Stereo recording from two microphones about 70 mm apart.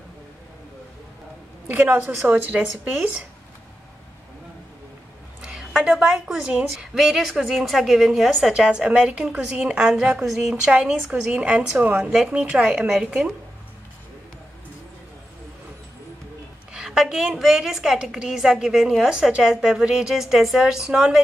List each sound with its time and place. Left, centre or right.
2.2 s a woman's voice: right
5.7 s a sound: centre
5.9 s a woman's voice: centre
16.7 s a woman's voice: centre